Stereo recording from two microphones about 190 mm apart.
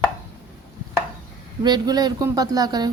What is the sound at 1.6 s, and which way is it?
Speech, 20° right (ahead or behind).